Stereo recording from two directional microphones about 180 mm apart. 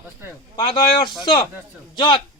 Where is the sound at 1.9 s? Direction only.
25° left (ahead or behind).